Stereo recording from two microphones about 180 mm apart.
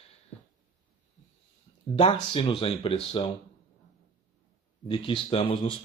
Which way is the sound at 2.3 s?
30° left (ahead or behind).